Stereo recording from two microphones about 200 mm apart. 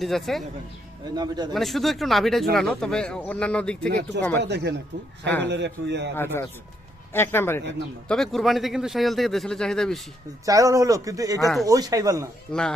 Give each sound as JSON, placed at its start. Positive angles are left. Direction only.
{"t": 0.0, "sound": "speech", "side_deg": 0}
{"t": 1.1, "sound": "a man's voice", "side_deg": -20}
{"t": 1.5, "sound": "speech", "side_deg": 0}
{"t": 3.8, "sound": "a man's voice", "side_deg": -55}
{"t": 6.1, "sound": "a man's voice", "side_deg": 10}
{"t": 10.4, "sound": "speech", "side_deg": -15}
{"t": 12.5, "sound": "speech", "side_deg": 5}